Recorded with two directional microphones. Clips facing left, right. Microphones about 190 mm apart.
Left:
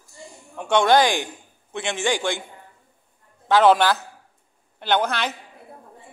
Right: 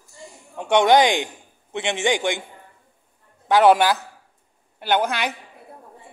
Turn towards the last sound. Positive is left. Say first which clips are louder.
# right 1 dB
turn(degrees=-10)  # may be behind; listen again after turning